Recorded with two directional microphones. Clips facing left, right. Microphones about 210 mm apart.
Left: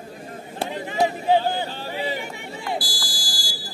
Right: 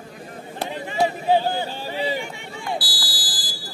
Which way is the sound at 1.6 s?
15° right (ahead or behind).